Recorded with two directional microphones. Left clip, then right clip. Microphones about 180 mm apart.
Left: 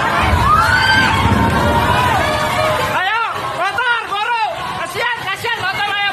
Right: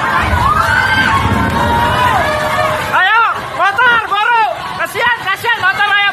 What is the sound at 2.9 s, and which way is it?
Hubbub, 30° right (ahead or behind).